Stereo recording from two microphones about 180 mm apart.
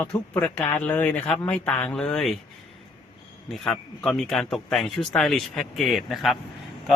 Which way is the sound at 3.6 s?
5° left (ahead or behind).